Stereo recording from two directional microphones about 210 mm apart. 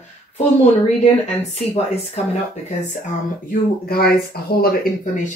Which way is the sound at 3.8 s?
50° left (ahead or behind).